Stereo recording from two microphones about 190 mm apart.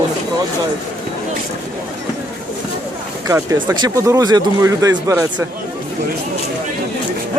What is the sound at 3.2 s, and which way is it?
Speech, 15° right (ahead or behind).